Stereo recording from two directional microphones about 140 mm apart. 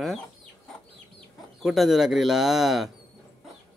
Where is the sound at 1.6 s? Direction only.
Centre (ahead or behind).